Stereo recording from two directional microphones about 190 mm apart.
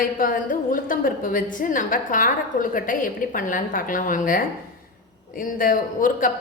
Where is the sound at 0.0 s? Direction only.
45° left (ahead or behind).